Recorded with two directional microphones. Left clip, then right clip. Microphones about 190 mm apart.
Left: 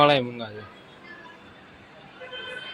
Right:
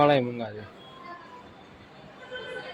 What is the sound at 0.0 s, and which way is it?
Speech, centre (ahead or behind).